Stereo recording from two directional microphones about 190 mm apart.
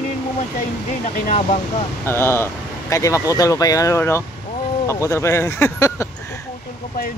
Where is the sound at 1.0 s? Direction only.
45° left (ahead or behind).